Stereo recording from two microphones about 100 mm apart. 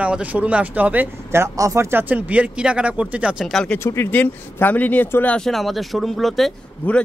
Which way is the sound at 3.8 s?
25° left (ahead or behind).